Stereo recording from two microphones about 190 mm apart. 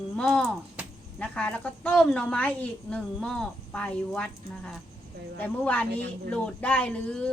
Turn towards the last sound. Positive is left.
turn(degrees=5)  # may be behind; listen again after turning